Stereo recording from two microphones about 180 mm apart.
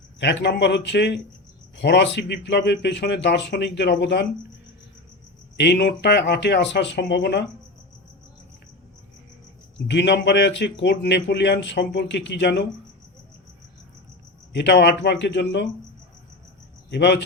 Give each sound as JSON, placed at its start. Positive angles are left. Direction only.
{"t": 0.2, "sound": "a man's voice", "side_deg": 70}
{"t": 5.5, "sound": "a man's voice", "side_deg": 70}
{"t": 9.7, "sound": "a man's voice", "side_deg": 75}
{"t": 14.5, "sound": "a man's voice", "side_deg": 70}
{"t": 16.9, "sound": "a man's voice", "side_deg": 75}